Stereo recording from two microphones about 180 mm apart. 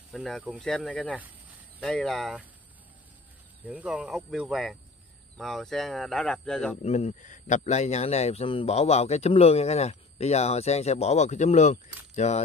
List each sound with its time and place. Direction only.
0.1 s speech: 5° left (ahead or behind)
3.6 s speech: 5° right (ahead or behind)
6.8 s a man's voice: 40° left (ahead or behind)